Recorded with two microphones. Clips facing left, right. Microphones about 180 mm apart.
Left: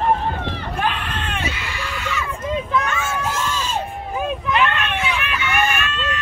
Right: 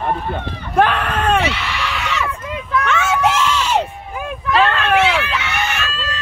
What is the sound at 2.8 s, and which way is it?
Screaming, 80° right.